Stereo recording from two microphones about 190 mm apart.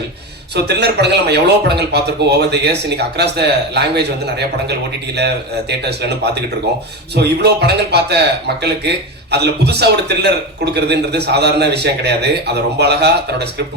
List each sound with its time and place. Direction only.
0.5 s speech: 60° right (ahead or behind)
7.2 s speech: 60° right (ahead or behind)